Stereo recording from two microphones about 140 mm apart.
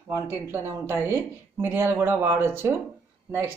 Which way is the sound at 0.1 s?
20° right (ahead or behind).